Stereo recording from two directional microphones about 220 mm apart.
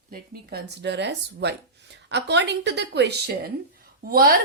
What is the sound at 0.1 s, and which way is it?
A woman's voice, 50° right (ahead or behind).